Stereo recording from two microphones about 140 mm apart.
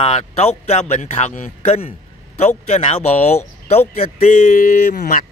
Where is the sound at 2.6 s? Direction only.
55° left (ahead or behind); by 5.2 s 75° left (ahead or behind).